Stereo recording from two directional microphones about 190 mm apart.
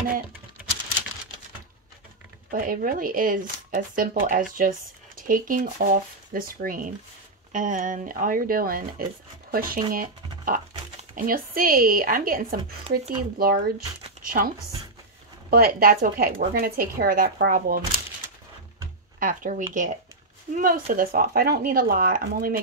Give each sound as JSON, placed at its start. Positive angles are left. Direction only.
{"t": 2.5, "sound": "speech", "side_deg": -50}
{"t": 15.5, "sound": "speech", "side_deg": -50}
{"t": 19.1, "sound": "speech", "side_deg": -45}